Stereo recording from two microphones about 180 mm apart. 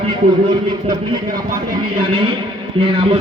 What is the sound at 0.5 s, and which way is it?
A man's voice, 25° right (ahead or behind).